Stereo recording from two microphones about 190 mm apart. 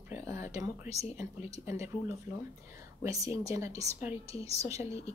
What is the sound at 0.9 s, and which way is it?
Speech, 35° left (ahead or behind).